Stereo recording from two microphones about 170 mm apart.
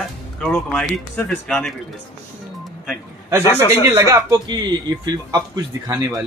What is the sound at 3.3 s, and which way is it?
A man's voice, 15° right (ahead or behind).